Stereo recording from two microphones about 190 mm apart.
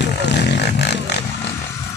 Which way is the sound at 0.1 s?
65° left (ahead or behind).